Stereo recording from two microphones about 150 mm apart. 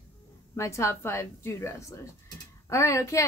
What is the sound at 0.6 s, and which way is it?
A woman's voice, 20° left (ahead or behind).